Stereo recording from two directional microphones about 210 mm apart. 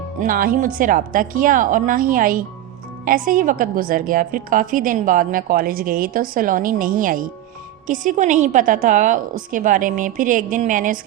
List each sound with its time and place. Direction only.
0.2 s a woman's voice: 40° right (ahead or behind)